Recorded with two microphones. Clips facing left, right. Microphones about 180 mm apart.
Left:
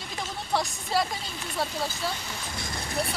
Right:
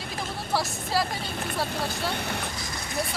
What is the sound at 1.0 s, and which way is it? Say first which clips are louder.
Speech: right 4 dB; 60° right (ahead or behind).